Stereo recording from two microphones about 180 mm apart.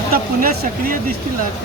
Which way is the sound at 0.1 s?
55° right (ahead or behind).